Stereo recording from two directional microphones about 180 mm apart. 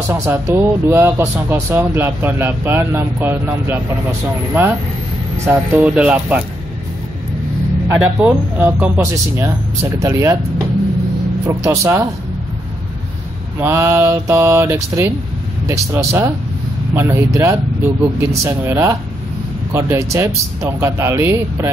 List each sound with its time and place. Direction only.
0.1 s speech: 15° right (ahead or behind)
5.4 s speech: 10° right (ahead or behind)
8.2 s speech: 10° right (ahead or behind)
11.4 s speech: 15° right (ahead or behind)
13.6 s speech: 15° right (ahead or behind)